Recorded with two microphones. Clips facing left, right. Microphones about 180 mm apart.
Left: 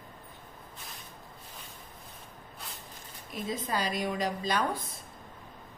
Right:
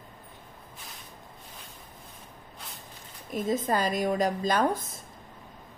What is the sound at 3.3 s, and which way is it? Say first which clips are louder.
Speech: right 7 dB; 45° right (ahead or behind).